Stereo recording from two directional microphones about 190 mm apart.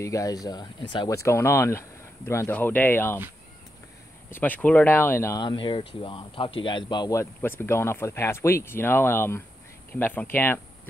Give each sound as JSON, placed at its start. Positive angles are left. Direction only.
{"t": 0.0, "sound": "speech", "side_deg": 15}
{"t": 4.3, "sound": "speech", "side_deg": 10}